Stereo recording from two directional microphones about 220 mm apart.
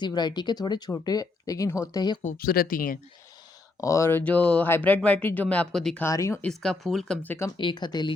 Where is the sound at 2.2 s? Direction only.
40° left (ahead or behind).